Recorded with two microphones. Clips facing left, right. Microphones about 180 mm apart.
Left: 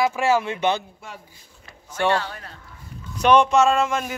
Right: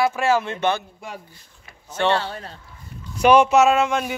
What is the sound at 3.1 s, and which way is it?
Speech, 10° right (ahead or behind).